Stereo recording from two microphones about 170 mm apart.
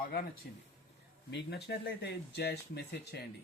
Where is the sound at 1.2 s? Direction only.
80° left.